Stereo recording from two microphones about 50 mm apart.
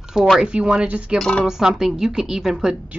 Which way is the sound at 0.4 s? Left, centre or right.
Centre.